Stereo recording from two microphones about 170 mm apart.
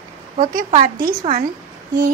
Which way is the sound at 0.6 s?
55° right (ahead or behind).